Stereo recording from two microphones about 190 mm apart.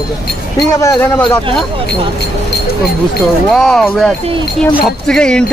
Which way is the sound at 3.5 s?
5° left (ahead or behind).